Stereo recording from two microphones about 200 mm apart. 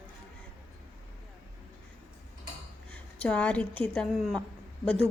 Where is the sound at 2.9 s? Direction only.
5° left (ahead or behind).